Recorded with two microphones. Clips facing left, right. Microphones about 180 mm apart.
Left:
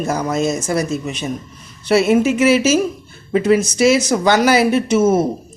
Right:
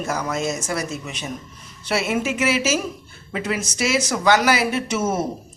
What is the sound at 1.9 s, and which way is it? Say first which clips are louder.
Speech: left 10 dB; 35° left (ahead or behind).